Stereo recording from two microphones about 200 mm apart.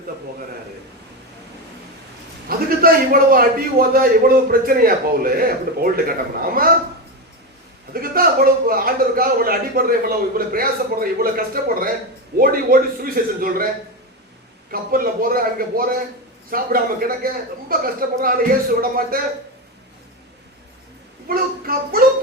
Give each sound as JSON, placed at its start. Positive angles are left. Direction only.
{"t": 2.5, "sound": "a man's voice", "side_deg": -45}
{"t": 7.9, "sound": "a man's voice", "side_deg": -45}
{"t": 14.7, "sound": "a man's voice", "side_deg": -45}
{"t": 21.2, "sound": "a man's voice", "side_deg": -45}